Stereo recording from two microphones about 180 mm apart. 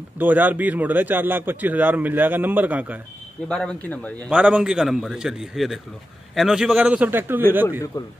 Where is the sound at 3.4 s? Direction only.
5° left (ahead or behind).